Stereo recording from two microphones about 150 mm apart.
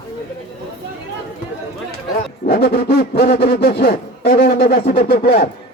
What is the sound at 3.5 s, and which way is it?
Speech, 75° left (ahead or behind).